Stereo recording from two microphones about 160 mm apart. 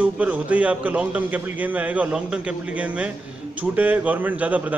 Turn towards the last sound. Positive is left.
turn(degrees=-10)  # may be behind; listen again after turning